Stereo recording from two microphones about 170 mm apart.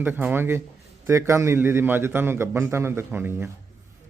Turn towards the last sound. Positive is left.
turn(degrees=-15)  # may be behind; listen again after turning